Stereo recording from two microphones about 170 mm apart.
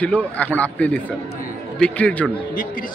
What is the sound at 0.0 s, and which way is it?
A man's voice, 10° left (ahead or behind).